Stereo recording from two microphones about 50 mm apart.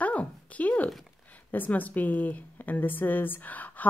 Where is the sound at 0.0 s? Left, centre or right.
Left.